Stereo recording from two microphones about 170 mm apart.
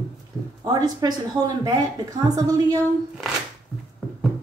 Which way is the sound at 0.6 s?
25° right (ahead or behind).